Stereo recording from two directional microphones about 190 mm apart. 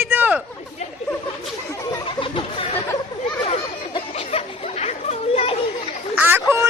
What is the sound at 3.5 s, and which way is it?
Chatter, 30° left (ahead or behind).